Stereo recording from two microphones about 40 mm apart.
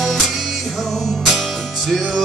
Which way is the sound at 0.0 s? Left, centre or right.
Centre.